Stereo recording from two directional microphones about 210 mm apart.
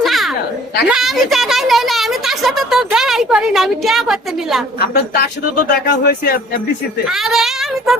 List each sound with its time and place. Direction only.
0.0 s a sound: centre (ahead or behind)
0.9 s speech: centre (ahead or behind)
4.8 s speech: 45° left (ahead or behind)
7.1 s speech: centre (ahead or behind)